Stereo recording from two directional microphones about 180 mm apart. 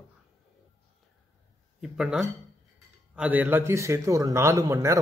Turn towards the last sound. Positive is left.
turn(degrees=-15)  # may be behind; listen again after turning